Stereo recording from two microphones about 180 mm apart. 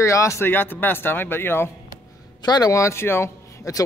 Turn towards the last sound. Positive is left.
turn(degrees=15)  # may be behind; listen again after turning